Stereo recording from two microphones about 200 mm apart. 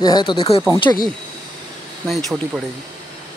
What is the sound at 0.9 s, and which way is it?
Speech, 15° left (ahead or behind).